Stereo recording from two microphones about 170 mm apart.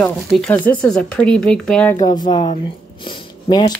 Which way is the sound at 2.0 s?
25° left (ahead or behind).